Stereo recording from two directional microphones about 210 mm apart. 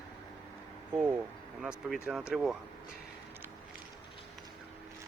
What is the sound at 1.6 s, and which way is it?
Speech, centre (ahead or behind).